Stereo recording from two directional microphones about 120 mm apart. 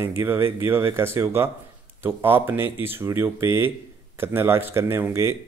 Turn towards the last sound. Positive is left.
turn(degrees=-20)  # may be behind; listen again after turning